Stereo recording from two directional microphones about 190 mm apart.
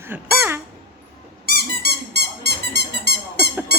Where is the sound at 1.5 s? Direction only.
55° right (ahead or behind).